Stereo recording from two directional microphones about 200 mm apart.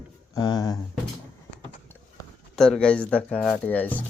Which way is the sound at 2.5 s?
Centre (ahead or behind).